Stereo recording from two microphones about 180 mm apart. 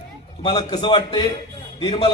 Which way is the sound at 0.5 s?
30° left (ahead or behind).